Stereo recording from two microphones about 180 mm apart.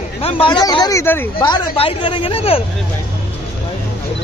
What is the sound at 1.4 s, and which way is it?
Speech, 30° left (ahead or behind).